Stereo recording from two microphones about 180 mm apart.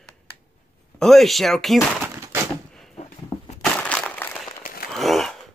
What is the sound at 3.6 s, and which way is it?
Crushing, 5° left (ahead or behind).